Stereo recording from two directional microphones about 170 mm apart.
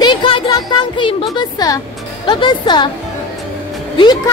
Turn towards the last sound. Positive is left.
turn(degrees=25)  # may be behind; listen again after turning